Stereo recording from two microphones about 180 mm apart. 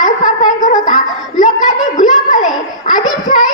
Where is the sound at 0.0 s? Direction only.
45° left (ahead or behind).